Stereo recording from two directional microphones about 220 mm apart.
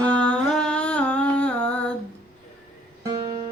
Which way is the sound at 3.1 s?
15° right (ahead or behind).